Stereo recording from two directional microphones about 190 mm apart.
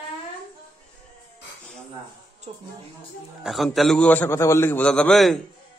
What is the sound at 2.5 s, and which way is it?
Speech, 30° right (ahead or behind).